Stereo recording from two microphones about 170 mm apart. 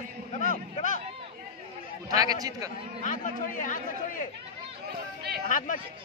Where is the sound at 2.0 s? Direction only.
20° right (ahead or behind).